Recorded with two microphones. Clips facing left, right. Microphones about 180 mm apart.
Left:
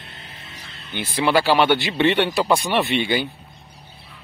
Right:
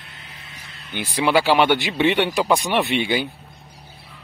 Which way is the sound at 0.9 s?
10° right (ahead or behind).